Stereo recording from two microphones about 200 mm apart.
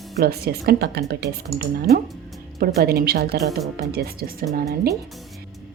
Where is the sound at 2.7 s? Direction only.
50° right (ahead or behind).